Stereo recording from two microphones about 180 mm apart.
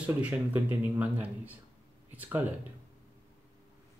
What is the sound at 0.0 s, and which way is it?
Speech, 10° right (ahead or behind).